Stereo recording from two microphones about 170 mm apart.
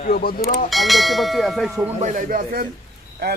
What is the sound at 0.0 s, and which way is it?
Speech, 60° left (ahead or behind).